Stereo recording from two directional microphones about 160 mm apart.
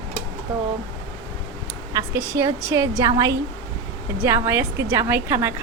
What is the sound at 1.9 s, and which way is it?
A woman's voice, 20° right (ahead or behind).